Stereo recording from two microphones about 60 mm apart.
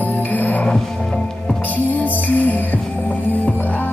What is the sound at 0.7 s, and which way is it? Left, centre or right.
Music, centre.